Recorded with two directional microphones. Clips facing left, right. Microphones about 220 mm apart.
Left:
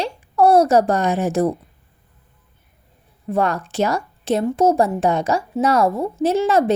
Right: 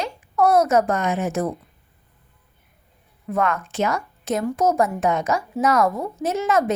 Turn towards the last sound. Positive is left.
turn(degrees=30)  # may be behind; listen again after turning